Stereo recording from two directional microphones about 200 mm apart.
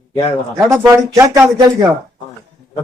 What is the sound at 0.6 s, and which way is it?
Speech, 15° right (ahead or behind).